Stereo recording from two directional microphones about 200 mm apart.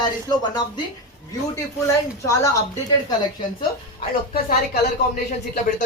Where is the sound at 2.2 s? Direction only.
15° left (ahead or behind).